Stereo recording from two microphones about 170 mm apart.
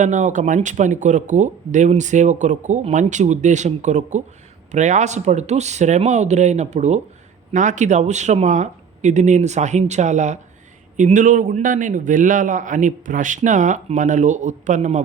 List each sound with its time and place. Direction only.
0.0 s speech: 45° right (ahead or behind)